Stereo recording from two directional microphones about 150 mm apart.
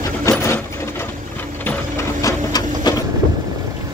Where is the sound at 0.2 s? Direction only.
20° left (ahead or behind).